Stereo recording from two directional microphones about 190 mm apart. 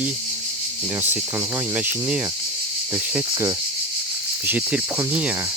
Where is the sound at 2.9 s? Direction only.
15° right (ahead or behind).